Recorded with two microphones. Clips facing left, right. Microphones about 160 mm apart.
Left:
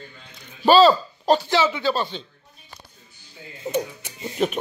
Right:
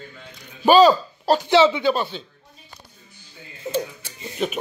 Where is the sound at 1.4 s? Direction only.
20° right (ahead or behind).